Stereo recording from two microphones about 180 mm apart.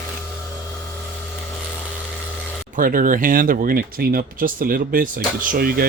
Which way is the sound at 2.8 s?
50° right (ahead or behind).